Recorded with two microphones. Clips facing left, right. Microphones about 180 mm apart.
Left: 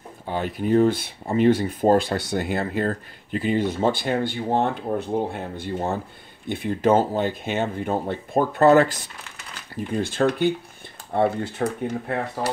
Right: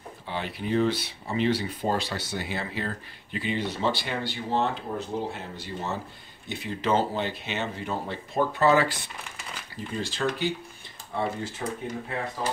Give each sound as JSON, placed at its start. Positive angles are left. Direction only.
{"t": 0.3, "sound": "speech", "side_deg": 45}